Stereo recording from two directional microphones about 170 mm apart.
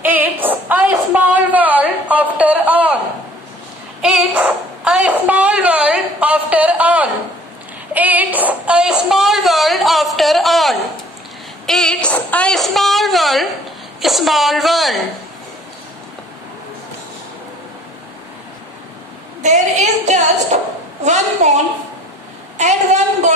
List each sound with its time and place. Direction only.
0.0 s a sound: 10° right (ahead or behind)
4.0 s a woman's voice: 5° right (ahead or behind)
19.4 s a woman's voice: 45° right (ahead or behind)